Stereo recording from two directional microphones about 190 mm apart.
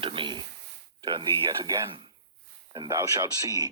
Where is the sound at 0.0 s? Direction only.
25° right (ahead or behind).